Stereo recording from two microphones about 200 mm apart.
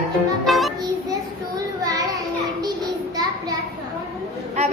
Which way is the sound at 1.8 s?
15° right (ahead or behind).